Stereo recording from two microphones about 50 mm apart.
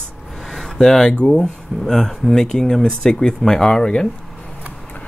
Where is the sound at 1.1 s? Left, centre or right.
Centre.